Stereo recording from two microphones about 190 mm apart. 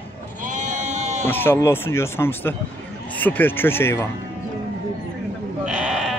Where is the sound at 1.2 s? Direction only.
10° left (ahead or behind).